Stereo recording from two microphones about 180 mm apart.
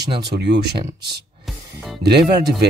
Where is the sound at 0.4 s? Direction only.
65° right (ahead or behind).